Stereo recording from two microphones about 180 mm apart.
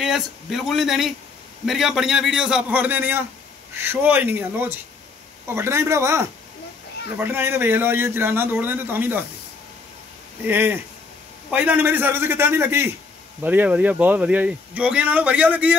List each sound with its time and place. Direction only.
0.0 s a man's voice: centre (ahead or behind)
10.4 s speech: 10° right (ahead or behind)